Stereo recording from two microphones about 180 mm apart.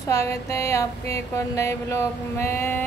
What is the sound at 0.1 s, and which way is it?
A woman's voice, 15° left (ahead or behind).